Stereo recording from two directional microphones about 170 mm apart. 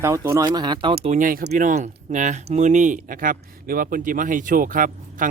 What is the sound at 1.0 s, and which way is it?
Speech, 50° right (ahead or behind).